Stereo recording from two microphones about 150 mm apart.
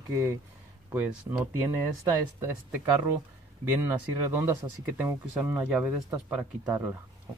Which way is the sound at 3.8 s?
15° right (ahead or behind).